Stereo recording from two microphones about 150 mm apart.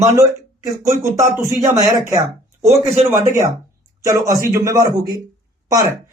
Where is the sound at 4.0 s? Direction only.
20° right (ahead or behind).